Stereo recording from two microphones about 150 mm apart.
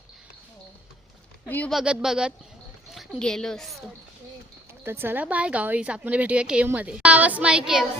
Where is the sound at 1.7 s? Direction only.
5° right (ahead or behind).